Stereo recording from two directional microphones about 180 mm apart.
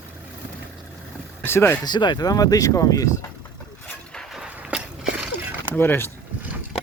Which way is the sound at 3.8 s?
5° left (ahead or behind).